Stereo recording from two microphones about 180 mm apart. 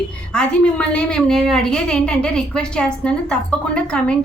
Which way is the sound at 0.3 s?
5° left (ahead or behind).